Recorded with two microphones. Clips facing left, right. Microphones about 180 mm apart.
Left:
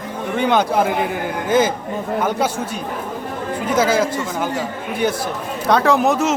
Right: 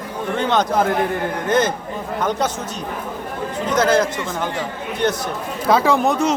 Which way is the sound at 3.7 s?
5° left (ahead or behind).